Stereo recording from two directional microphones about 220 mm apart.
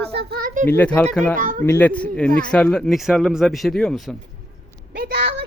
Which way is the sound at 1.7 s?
10° left (ahead or behind).